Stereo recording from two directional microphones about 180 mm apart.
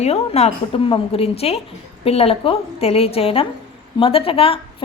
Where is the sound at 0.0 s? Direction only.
35° left (ahead or behind).